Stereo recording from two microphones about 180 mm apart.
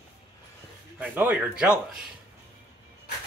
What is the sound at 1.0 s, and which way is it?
Speech, 10° right (ahead or behind).